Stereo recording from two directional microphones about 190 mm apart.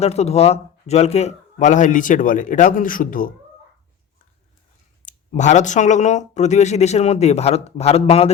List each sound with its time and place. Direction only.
0.0 s a man's voice: 35° left (ahead or behind)
5.0 s speech: 40° left (ahead or behind)